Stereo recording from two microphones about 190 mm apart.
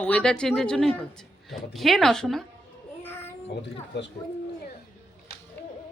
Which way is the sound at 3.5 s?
65° left (ahead or behind).